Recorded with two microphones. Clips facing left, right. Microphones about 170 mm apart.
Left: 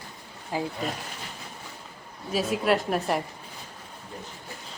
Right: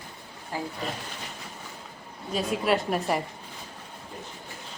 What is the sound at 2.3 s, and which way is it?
Speech, centre (ahead or behind).